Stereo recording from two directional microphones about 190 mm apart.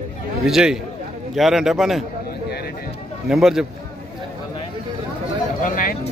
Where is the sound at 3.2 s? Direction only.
Centre (ahead or behind).